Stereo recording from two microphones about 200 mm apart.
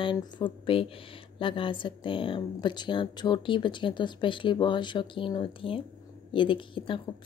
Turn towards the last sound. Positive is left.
turn(degrees=25)  # may be behind; listen again after turning